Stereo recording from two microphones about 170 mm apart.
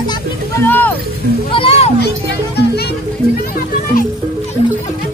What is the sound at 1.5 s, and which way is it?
Music, 35° left (ahead or behind).